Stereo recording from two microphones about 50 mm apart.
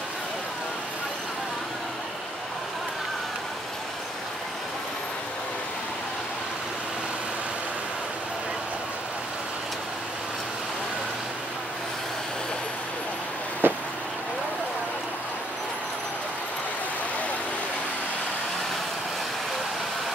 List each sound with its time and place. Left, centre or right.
13.6 s vehicle: right